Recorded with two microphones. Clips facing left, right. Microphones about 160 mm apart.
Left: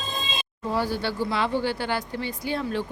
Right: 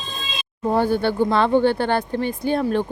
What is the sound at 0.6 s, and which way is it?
A woman's voice, 55° right (ahead or behind).